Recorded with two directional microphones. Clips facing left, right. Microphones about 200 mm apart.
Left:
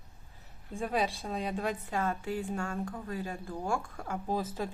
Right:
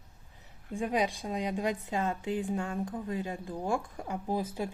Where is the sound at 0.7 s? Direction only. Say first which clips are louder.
Right 2 dB; 15° right (ahead or behind).